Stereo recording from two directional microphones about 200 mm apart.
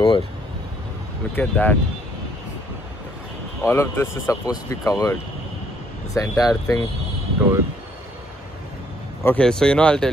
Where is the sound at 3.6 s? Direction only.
15° left (ahead or behind).